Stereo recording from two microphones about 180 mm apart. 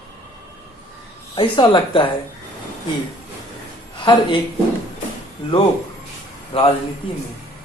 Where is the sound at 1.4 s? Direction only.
25° left (ahead or behind).